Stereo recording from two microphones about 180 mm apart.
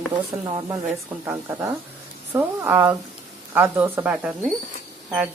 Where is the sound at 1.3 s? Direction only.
15° right (ahead or behind).